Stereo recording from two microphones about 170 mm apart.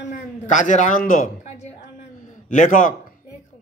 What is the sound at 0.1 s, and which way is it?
A man's voice, 45° left (ahead or behind).